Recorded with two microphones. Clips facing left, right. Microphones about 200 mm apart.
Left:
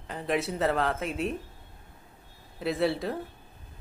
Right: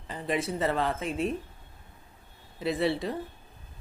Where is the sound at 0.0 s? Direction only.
Centre (ahead or behind).